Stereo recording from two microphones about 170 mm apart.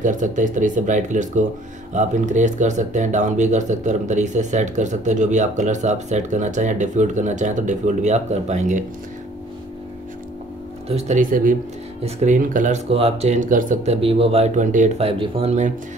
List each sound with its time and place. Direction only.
0.0 s speech: 50° right (ahead or behind)
10.9 s speech: 40° right (ahead or behind)
14.0 s speech: 35° right (ahead or behind)